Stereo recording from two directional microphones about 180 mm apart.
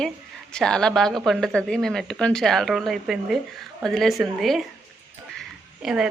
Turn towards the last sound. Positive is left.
turn(degrees=-5)  # may be behind; listen again after turning